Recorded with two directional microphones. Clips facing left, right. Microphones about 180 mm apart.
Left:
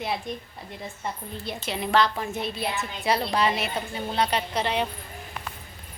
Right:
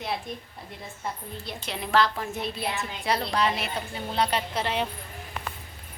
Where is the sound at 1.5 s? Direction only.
Centre (ahead or behind).